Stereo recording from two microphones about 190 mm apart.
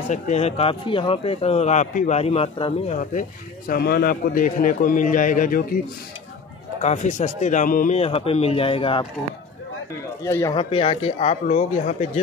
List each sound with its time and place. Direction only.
0.1 s speech: 35° left (ahead or behind)
6.8 s speech: 40° left (ahead or behind)
8.0 s a man's voice: 30° left (ahead or behind)
10.2 s speech: 15° left (ahead or behind); by 12.1 s 35° left (ahead or behind)